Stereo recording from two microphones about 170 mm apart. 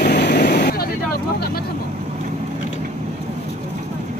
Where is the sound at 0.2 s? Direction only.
75° left (ahead or behind).